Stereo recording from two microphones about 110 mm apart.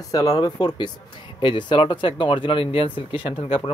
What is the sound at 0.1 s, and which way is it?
Speech, 35° left (ahead or behind).